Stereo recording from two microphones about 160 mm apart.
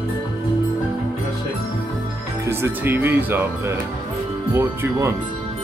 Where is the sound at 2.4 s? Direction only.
15° right (ahead or behind).